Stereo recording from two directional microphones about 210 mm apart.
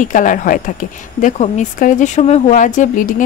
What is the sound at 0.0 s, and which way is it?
Speech, 40° left (ahead or behind).